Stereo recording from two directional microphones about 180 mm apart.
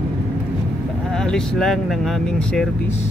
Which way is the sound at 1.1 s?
5° left (ahead or behind).